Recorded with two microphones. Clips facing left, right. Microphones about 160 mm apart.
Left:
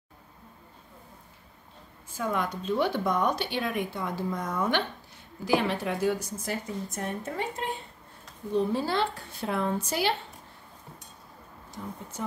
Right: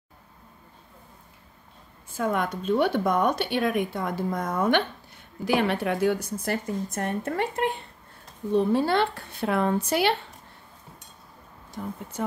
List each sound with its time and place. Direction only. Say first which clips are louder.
2.1 s speech: right 3 dB; 55° right (ahead or behind)
11.8 s speech: right 5 dB; 55° right (ahead or behind)